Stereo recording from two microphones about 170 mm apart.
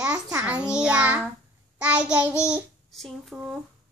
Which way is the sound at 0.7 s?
5° right (ahead or behind).